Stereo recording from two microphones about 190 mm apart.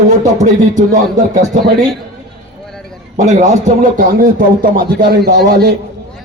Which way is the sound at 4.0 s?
45° right (ahead or behind).